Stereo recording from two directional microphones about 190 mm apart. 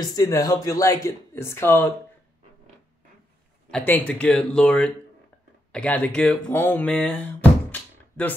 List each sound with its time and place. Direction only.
0.0 s speech: 20° left (ahead or behind)
3.7 s speech: 10° left (ahead or behind)
7.7 s music: 10° left (ahead or behind)